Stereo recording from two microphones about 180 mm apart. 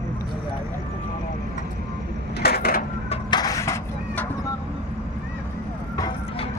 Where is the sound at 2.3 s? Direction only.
60° left (ahead or behind).